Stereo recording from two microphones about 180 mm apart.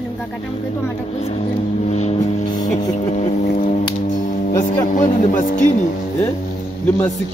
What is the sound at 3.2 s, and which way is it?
Boat, 40° left (ahead or behind).